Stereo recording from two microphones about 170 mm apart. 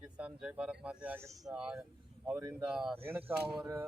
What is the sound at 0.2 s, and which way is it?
Speech, 5° right (ahead or behind).